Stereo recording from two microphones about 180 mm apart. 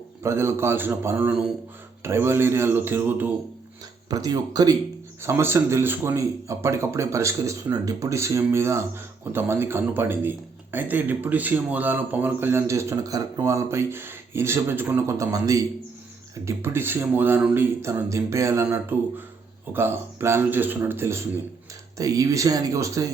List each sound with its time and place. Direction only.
0.2 s a man's voice: 15° right (ahead or behind)